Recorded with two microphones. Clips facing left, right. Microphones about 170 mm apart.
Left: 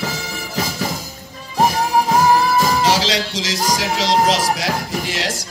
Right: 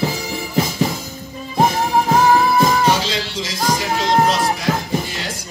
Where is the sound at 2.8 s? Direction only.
90° left.